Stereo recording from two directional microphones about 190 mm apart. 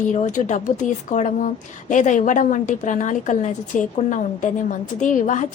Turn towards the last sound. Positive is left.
turn(degrees=45)  # may be behind; listen again after turning